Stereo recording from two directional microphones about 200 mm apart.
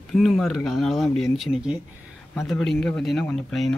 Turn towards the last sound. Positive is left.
turn(degrees=5)  # may be behind; listen again after turning